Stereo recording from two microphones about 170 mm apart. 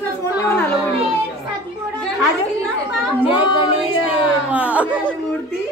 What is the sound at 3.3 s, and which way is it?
Child singing, 30° left (ahead or behind).